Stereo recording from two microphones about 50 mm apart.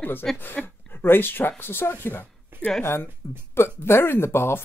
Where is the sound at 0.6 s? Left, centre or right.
Centre.